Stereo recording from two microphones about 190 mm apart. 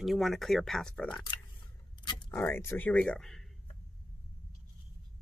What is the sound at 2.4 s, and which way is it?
Speech, 10° left (ahead or behind).